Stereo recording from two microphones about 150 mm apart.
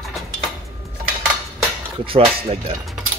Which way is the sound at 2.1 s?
40° right (ahead or behind).